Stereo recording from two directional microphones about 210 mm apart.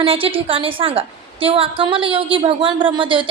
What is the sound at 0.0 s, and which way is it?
A woman's voice, 25° right (ahead or behind).